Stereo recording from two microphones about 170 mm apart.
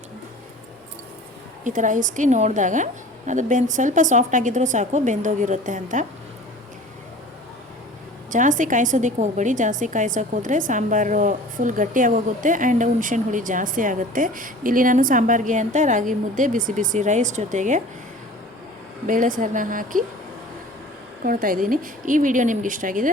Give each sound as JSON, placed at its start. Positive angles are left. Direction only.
{"t": 1.6, "sound": "a woman's voice", "side_deg": -50}
{"t": 8.3, "sound": "a woman's voice", "side_deg": -50}
{"t": 19.0, "sound": "a woman's voice", "side_deg": -50}
{"t": 21.2, "sound": "a woman's voice", "side_deg": -55}